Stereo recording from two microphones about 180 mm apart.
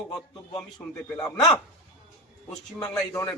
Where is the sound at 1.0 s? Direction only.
15° left (ahead or behind).